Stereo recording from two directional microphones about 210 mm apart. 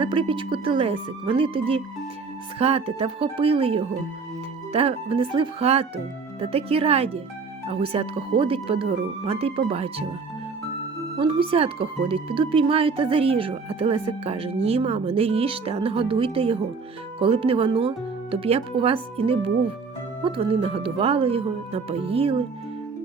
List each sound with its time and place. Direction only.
0.0 s speech: 25° right (ahead or behind)
11.2 s speech: 25° right (ahead or behind)